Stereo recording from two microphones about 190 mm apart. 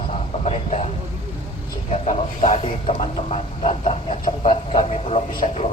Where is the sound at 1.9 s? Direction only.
40° left (ahead or behind).